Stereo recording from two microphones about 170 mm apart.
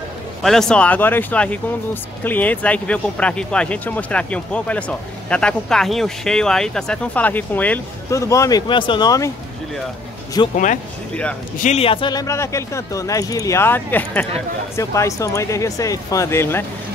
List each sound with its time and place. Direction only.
0.4 s speech: centre (ahead or behind); by 9.3 s 20° left (ahead or behind)
10.5 s speech: 50° left (ahead or behind)
11.6 s speech: 35° left (ahead or behind); by 16.6 s 15° left (ahead or behind)